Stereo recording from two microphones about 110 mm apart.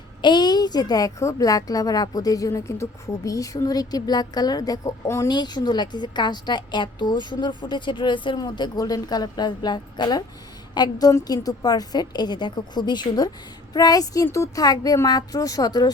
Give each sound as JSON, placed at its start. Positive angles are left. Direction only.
{"t": 0.2, "sound": "a woman's voice", "side_deg": 40}
{"t": 5.3, "sound": "a woman's voice", "side_deg": 40}